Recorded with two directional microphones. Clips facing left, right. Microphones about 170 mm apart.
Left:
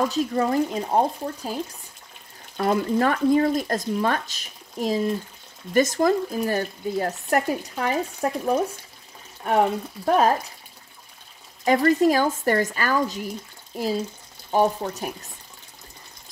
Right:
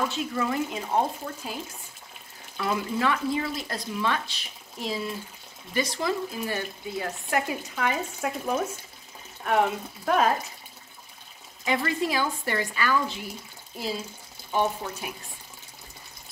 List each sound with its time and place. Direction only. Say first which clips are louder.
0.1 s speech: left 6 dB; 40° left (ahead or behind)
11.6 s speech: left 9 dB; 45° left (ahead or behind)